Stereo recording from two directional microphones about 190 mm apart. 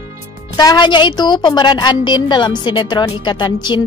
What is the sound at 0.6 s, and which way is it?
A woman's voice, 20° left (ahead or behind).